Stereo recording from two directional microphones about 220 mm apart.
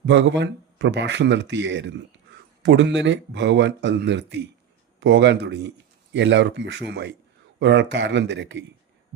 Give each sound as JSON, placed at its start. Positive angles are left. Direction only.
{"t": 0.0, "sound": "a man's voice", "side_deg": -55}